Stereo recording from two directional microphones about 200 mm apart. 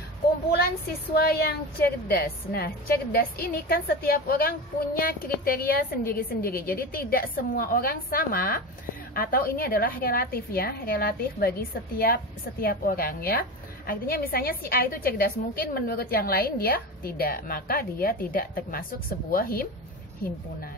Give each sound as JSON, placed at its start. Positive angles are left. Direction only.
{"t": 1.1, "sound": "a woman's voice", "side_deg": 50}